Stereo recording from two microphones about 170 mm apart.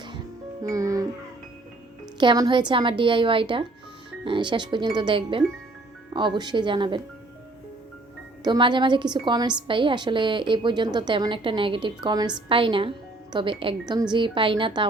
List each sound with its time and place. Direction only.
0.6 s speech: 20° right (ahead or behind)
2.1 s a woman's voice: 25° right (ahead or behind)
8.4 s a woman's voice: 25° right (ahead or behind)